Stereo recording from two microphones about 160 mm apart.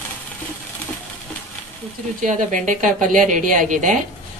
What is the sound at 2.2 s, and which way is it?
A woman's voice, 55° right (ahead or behind).